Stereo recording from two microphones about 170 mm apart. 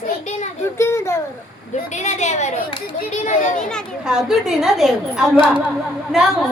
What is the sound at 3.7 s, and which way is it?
A woman's voice, centre (ahead or behind).